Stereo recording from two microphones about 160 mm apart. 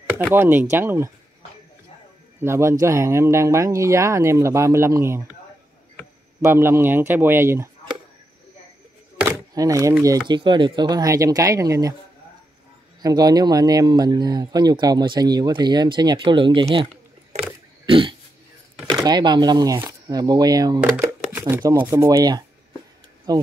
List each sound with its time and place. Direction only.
0.2 s speech: 15° right (ahead or behind)
2.4 s speech: 15° right (ahead or behind)
6.4 s speech: 15° right (ahead or behind)
9.6 s speech: 20° right (ahead or behind)
13.0 s speech: 25° right (ahead or behind)
17.8 s pig: 30° right (ahead or behind)
18.9 s speech: 25° right (ahead or behind)
20.8 s speech: 10° right (ahead or behind); by 23.4 s 25° right (ahead or behind)